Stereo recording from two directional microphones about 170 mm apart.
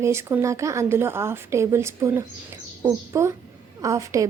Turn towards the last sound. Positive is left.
turn(degrees=-20)  # may be behind; listen again after turning